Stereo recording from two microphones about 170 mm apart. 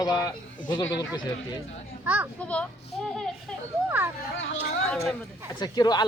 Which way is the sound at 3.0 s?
Centre (ahead or behind).